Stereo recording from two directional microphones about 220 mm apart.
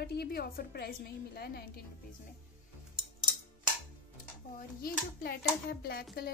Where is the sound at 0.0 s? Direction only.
45° left (ahead or behind).